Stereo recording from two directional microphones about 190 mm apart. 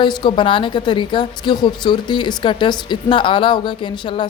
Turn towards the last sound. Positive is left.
turn(degrees=25)  # may be behind; listen again after turning